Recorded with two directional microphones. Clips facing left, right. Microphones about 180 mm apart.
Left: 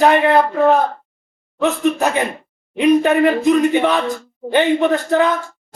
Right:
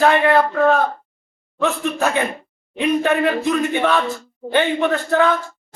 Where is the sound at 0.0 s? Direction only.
20° left (ahead or behind).